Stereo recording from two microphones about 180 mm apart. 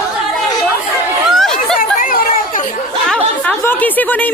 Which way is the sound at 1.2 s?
Centre (ahead or behind).